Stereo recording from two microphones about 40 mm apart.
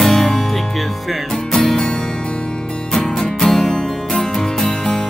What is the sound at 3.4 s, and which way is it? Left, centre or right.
Music, centre.